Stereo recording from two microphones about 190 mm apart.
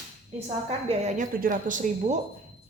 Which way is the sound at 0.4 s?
35° right (ahead or behind).